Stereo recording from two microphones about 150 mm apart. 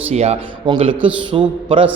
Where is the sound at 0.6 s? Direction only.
35° right (ahead or behind).